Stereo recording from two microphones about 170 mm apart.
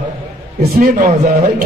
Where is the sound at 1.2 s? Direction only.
40° right (ahead or behind).